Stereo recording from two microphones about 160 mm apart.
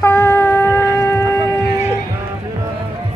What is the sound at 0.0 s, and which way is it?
Shofar, 15° left (ahead or behind).